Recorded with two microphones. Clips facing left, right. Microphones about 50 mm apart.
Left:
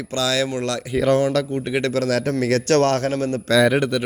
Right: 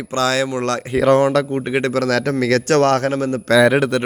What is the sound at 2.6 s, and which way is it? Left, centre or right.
Speech, right.